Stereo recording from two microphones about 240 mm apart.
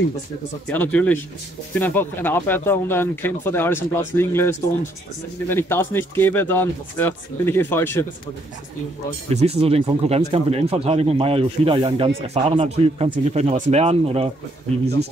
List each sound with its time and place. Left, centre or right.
0.7 s speech: centre
9.3 s speech: right